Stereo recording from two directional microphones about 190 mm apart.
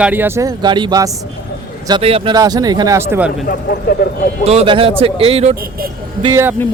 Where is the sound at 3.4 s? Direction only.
55° left (ahead or behind).